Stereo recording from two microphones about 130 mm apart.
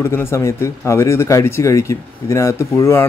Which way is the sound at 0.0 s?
20° left (ahead or behind).